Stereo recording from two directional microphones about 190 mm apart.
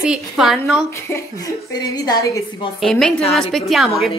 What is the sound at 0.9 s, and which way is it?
A woman's voice, 15° left (ahead or behind).